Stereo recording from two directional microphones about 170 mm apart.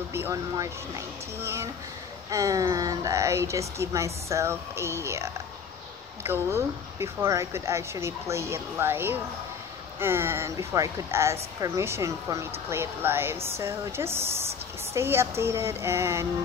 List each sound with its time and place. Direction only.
0.1 s speech: 15° right (ahead or behind)